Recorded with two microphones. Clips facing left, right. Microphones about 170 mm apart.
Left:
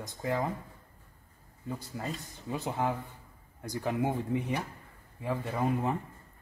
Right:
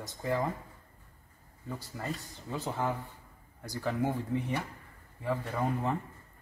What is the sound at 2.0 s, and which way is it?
A man's voice, 20° left (ahead or behind).